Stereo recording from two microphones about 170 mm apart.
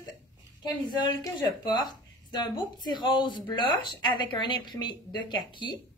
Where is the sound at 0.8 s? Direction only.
25° left (ahead or behind).